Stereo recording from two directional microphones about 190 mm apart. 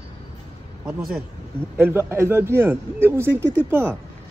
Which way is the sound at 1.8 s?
10° right (ahead or behind).